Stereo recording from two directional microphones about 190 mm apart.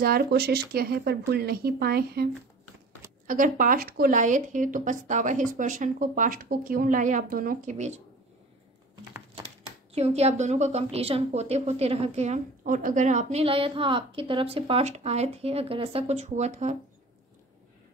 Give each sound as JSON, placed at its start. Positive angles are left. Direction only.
{"t": 0.0, "sound": "speech", "side_deg": -55}
{"t": 3.3, "sound": "speech", "side_deg": -45}
{"t": 9.9, "sound": "a woman's voice", "side_deg": -35}